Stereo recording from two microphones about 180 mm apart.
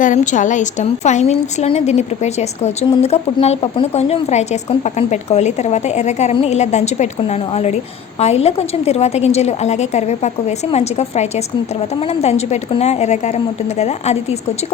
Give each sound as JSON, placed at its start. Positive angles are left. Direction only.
{"t": 0.0, "sound": "a woman's voice", "side_deg": 45}